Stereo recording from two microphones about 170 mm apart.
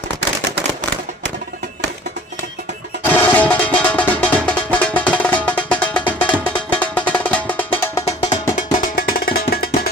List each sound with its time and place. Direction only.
3.0 s music: 10° left (ahead or behind)
8.0 s music: 40° left (ahead or behind)
8.8 s music: 60° left (ahead or behind)